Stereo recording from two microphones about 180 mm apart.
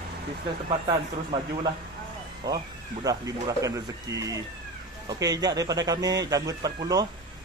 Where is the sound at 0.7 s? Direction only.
30° right (ahead or behind).